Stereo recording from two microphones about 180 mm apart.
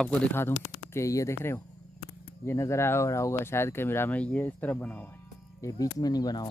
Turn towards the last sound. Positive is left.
turn(degrees=20)  # may be behind; listen again after turning